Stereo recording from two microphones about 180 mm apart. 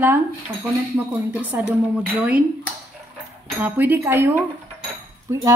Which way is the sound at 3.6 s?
10° right (ahead or behind).